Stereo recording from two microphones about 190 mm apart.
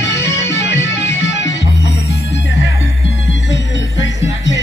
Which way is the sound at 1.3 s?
70° left (ahead or behind).